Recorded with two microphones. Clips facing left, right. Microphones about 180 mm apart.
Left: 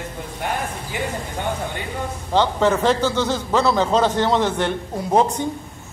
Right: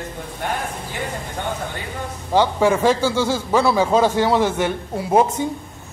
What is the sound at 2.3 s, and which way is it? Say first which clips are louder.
A man's voice: right 1 dB; 10° right (ahead or behind).